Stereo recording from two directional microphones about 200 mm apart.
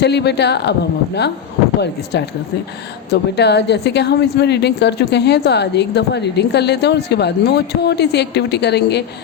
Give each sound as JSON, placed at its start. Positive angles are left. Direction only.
{"t": 0.0, "sound": "speech", "side_deg": 55}
{"t": 3.1, "sound": "speech", "side_deg": 55}